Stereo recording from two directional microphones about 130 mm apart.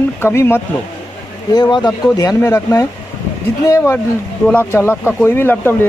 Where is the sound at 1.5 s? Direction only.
35° left (ahead or behind).